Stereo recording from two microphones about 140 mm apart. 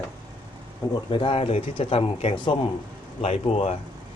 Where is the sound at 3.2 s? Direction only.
50° left (ahead or behind).